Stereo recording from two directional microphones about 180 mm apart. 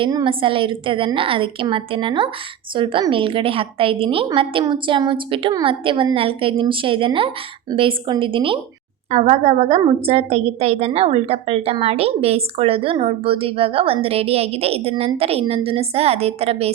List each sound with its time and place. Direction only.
0.0 s a woman's voice: 25° right (ahead or behind)